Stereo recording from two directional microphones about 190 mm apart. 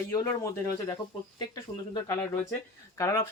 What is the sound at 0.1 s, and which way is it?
Speech, 15° left (ahead or behind).